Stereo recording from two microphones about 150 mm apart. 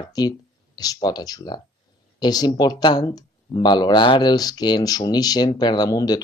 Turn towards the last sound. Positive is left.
turn(degrees=25)  # may be behind; listen again after turning